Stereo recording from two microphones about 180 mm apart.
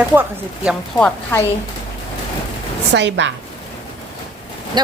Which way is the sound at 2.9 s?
75° right (ahead or behind).